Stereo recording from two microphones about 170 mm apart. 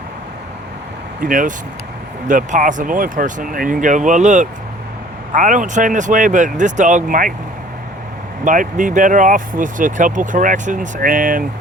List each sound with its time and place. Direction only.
1.2 s speech: 50° right (ahead or behind)
8.4 s speech: 50° right (ahead or behind)